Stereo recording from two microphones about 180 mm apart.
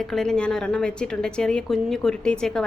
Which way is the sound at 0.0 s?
5° left (ahead or behind).